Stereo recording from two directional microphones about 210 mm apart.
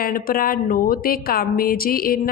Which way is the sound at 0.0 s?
45° left (ahead or behind).